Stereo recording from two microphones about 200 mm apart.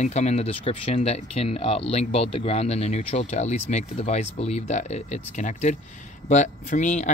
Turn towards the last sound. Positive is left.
turn(degrees=35)  # may be behind; listen again after turning